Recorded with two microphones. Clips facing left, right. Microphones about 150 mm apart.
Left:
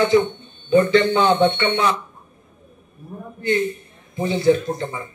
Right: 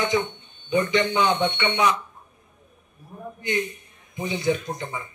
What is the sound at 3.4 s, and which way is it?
A man's voice, 15° right (ahead or behind).